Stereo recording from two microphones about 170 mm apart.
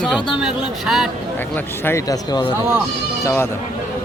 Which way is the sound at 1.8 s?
20° left (ahead or behind).